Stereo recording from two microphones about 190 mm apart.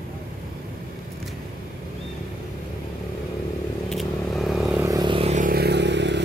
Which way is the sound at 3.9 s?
Centre (ahead or behind).